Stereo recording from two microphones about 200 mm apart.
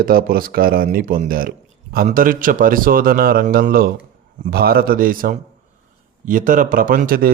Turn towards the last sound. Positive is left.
turn(degrees=-45)  # may be behind; listen again after turning